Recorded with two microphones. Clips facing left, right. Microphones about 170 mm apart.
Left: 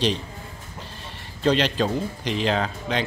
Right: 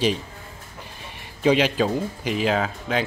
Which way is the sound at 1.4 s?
10° right (ahead or behind).